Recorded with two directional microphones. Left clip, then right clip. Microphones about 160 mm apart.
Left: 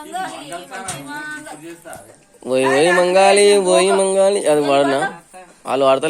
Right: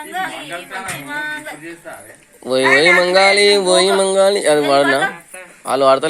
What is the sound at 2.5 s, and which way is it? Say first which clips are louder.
Speech: right 3 dB; 5° left (ahead or behind).